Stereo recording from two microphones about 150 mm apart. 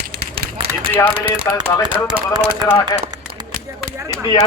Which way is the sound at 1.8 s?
30° right (ahead or behind).